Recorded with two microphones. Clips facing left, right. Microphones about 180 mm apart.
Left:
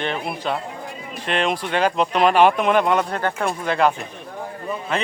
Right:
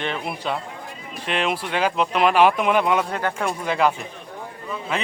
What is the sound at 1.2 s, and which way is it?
Speech, 5° right (ahead or behind).